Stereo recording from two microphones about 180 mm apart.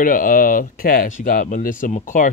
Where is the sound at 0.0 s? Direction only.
50° left (ahead or behind).